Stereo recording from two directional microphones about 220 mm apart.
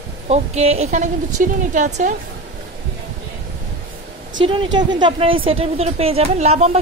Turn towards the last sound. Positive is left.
turn(degrees=-30)  # may be behind; listen again after turning